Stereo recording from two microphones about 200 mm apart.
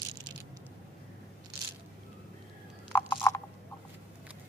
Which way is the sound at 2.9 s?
10° left (ahead or behind).